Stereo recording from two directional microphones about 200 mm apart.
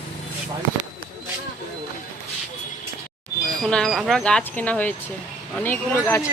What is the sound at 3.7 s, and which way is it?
Speech, 5° left (ahead or behind).